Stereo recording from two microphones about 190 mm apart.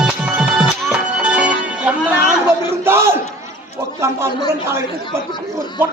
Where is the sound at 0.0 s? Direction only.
5° right (ahead or behind).